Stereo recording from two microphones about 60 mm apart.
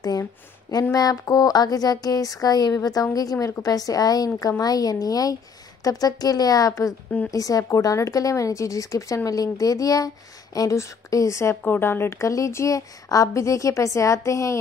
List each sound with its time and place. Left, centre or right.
0.9 s speech: left
10.8 s a woman's voice: left
11.6 s speech: left
12.2 s a woman's voice: left
12.7 s a woman's voice: left